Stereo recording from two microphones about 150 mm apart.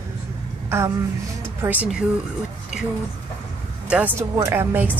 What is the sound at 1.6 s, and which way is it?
Speech, 10° right (ahead or behind).